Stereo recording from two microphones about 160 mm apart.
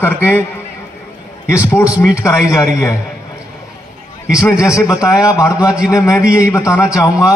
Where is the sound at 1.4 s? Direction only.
15° left (ahead or behind).